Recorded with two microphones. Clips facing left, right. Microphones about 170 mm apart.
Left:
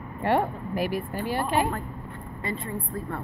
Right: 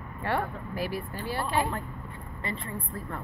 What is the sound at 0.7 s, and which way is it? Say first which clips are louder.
Speech: left 5 dB; 15° left (ahead or behind).